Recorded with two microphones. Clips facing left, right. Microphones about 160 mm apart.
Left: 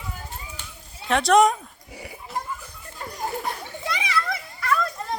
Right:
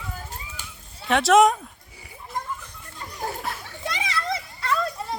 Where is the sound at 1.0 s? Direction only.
Centre (ahead or behind).